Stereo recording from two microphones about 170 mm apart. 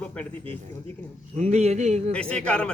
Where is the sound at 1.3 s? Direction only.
40° right (ahead or behind).